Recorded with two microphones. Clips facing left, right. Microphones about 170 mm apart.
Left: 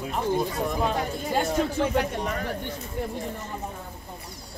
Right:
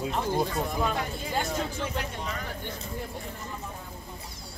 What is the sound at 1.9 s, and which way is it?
Speech, 55° left (ahead or behind).